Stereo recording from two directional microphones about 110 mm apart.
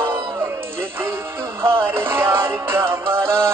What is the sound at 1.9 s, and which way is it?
Music, 20° right (ahead or behind).